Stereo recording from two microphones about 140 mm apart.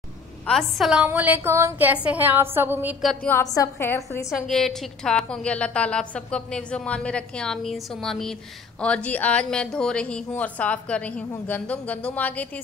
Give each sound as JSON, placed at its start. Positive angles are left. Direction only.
{"t": 0.5, "sound": "a woman's voice", "side_deg": 0}
{"t": 1.0, "sound": "a sound", "side_deg": -10}
{"t": 3.4, "sound": "a woman's voice", "side_deg": 25}
{"t": 4.5, "sound": "a woman's voice", "side_deg": 0}